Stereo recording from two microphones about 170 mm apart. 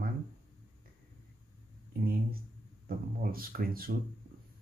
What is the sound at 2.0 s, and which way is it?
Speech, 60° right (ahead or behind).